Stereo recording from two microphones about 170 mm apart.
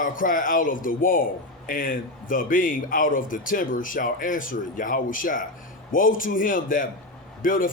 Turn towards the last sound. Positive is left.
turn(degrees=55)  # may be behind; listen again after turning